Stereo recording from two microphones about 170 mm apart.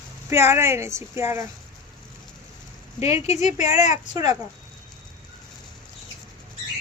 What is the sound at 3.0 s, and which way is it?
Speech, 40° left (ahead or behind).